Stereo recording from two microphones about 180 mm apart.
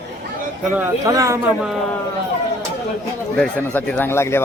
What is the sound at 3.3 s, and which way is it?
Speech, 5° left (ahead or behind).